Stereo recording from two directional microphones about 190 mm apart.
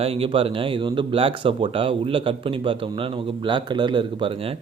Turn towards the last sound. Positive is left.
turn(degrees=-25)  # may be behind; listen again after turning